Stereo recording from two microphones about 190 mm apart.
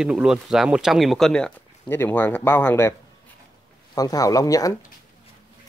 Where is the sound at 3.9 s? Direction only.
20° left (ahead or behind).